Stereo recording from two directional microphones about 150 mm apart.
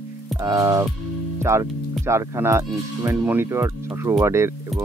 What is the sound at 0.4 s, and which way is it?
Speech, 20° right (ahead or behind).